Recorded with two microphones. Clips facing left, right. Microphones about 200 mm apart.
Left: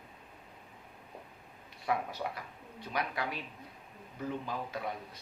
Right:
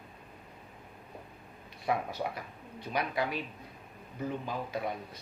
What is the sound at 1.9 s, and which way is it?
Speech, 20° right (ahead or behind).